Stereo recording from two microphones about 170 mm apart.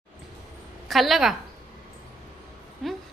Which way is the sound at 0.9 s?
Centre (ahead or behind).